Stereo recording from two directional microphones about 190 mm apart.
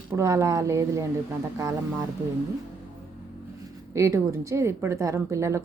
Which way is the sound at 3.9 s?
15° right (ahead or behind).